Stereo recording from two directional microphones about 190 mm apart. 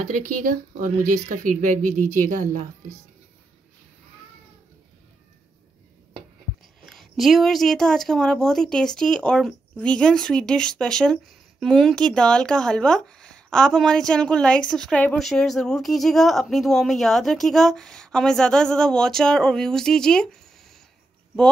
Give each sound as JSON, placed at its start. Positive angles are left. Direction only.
{"t": 0.0, "sound": "speech", "side_deg": -45}
{"t": 6.9, "sound": "speech", "side_deg": 0}